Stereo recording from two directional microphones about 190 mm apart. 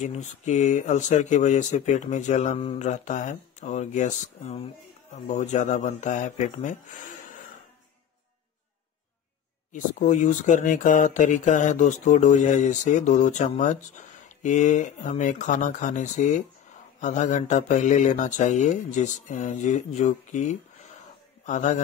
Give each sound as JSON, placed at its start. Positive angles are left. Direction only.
{"t": 0.0, "sound": "speech", "side_deg": 35}
{"t": 9.7, "sound": "speech", "side_deg": 40}